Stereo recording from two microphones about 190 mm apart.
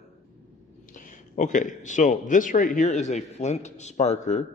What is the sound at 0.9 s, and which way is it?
A man's voice, 40° left (ahead or behind).